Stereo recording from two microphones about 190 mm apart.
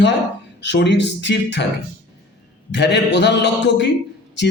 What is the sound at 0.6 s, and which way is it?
Speech, 65° left (ahead or behind).